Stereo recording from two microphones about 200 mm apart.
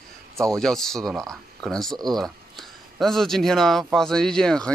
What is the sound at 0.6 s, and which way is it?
Speech, centre (ahead or behind).